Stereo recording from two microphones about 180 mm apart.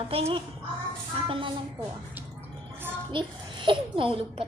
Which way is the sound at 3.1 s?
30° right (ahead or behind).